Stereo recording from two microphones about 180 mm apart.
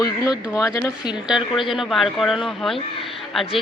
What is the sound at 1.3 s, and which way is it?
Speech, centre (ahead or behind).